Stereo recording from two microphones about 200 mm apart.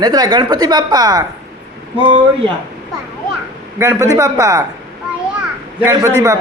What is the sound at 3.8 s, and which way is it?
Speech, 15° right (ahead or behind).